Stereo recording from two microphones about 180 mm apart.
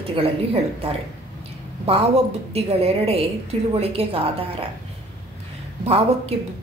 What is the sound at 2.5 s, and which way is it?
A woman's voice, 35° right (ahead or behind).